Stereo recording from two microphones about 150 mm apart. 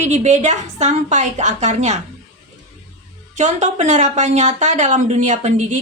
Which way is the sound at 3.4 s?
55° right (ahead or behind).